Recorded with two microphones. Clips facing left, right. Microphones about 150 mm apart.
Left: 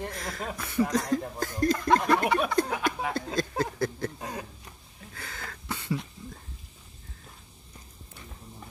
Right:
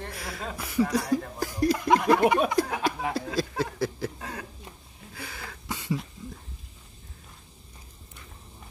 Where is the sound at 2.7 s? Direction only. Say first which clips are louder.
Right 1 dB; 30° right (ahead or behind).